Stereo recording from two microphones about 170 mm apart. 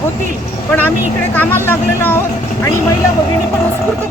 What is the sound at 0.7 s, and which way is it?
Speech, 10° left (ahead or behind).